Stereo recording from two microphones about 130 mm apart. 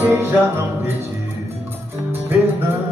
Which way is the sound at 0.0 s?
15° right (ahead or behind).